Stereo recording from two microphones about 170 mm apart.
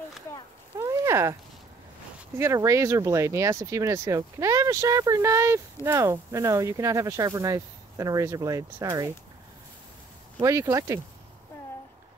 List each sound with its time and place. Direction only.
0.7 s a sound: 15° right (ahead or behind)
2.3 s speech: 15° right (ahead or behind)
10.4 s speech: 20° right (ahead or behind)